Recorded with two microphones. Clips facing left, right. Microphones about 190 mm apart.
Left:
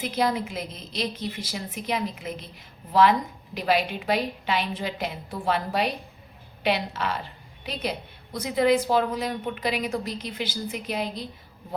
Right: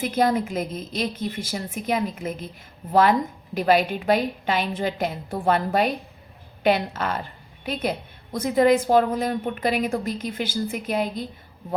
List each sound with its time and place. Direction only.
0.0 s a woman's voice: 50° right (ahead or behind)